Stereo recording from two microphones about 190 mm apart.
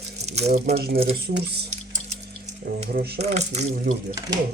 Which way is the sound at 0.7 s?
55° right (ahead or behind).